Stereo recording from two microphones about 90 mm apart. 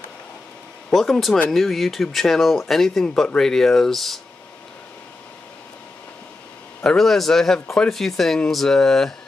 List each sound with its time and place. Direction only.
0.8 s speech: 5° left (ahead or behind)
6.8 s speech: 5° left (ahead or behind)